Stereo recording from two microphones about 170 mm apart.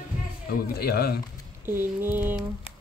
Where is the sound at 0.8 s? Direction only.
65° left (ahead or behind).